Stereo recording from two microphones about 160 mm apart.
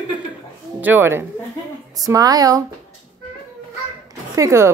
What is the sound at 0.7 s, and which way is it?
A woman's voice, 10° right (ahead or behind).